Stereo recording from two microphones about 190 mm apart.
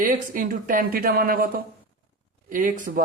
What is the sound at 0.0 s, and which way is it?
Speech, 45° right (ahead or behind).